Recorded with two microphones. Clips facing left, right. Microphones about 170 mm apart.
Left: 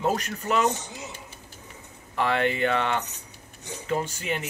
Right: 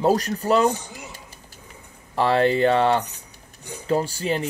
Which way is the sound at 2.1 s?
35° right (ahead or behind).